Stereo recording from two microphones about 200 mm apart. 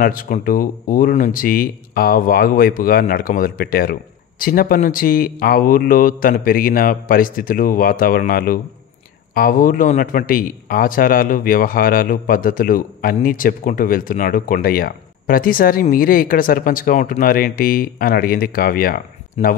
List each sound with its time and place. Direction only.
0.0 s a man's voice: 45° left (ahead or behind)